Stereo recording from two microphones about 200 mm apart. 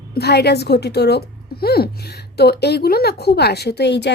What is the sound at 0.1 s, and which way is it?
A woman's voice, 55° left (ahead or behind).